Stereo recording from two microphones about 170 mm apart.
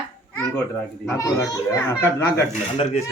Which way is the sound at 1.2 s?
20° left (ahead or behind).